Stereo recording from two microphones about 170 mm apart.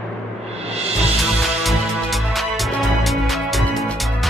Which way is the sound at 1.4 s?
Centre (ahead or behind).